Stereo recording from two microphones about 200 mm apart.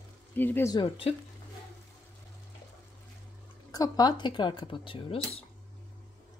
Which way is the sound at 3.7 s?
20° left (ahead or behind).